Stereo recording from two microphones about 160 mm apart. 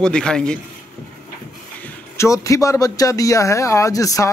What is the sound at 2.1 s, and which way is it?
A man's voice, 20° left (ahead or behind).